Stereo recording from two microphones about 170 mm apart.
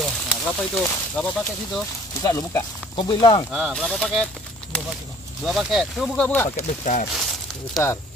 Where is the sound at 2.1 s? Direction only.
20° left (ahead or behind).